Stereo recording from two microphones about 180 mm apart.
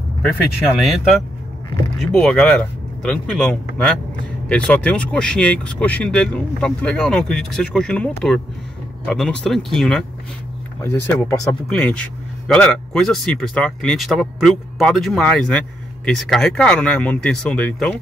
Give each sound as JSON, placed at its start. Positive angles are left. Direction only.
{"t": 0.7, "sound": "speech", "side_deg": 0}
{"t": 10.8, "sound": "speech", "side_deg": 15}
{"t": 11.6, "sound": "speech", "side_deg": 5}